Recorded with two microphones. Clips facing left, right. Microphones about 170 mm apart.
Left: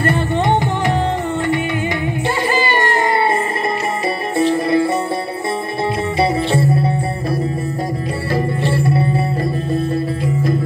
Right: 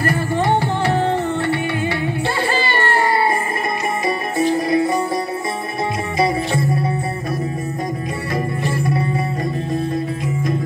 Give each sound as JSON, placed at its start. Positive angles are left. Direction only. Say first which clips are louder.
{"t": 0.0, "sound": "music", "louder": "left 2 dB", "side_deg": 25}
{"t": 2.5, "sound": "music", "louder": "left 2 dB", "side_deg": 15}
{"t": 4.4, "sound": "music", "louder": "left 2 dB", "side_deg": 30}
{"t": 6.1, "sound": "music", "louder": "left 1 dB", "side_deg": 30}
{"t": 8.3, "sound": "music", "louder": "left 4 dB", "side_deg": 30}